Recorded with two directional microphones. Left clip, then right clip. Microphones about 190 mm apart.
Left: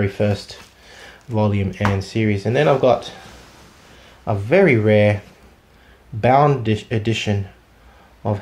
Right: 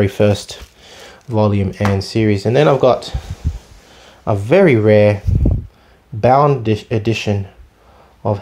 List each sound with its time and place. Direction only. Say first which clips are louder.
0.0 s speech: right 6 dB; 45° right (ahead or behind)
4.2 s speech: right 4 dB; 40° right (ahead or behind)
6.2 s speech: right 3 dB; 25° right (ahead or behind)